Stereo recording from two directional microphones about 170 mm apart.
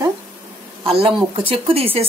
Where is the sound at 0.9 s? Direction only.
35° right (ahead or behind).